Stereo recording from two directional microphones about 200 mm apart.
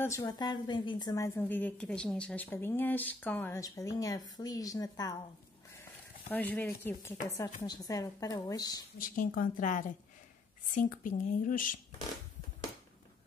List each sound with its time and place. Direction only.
0.0 s a woman's voice: 15° left (ahead or behind)
6.3 s a woman's voice: 10° left (ahead or behind)
8.9 s speech: 45° left (ahead or behind)